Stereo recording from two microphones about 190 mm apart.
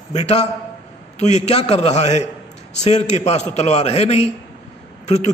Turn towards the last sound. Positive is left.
turn(degrees=35)  # may be behind; listen again after turning